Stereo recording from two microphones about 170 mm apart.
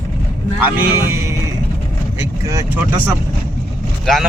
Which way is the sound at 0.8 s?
15° right (ahead or behind).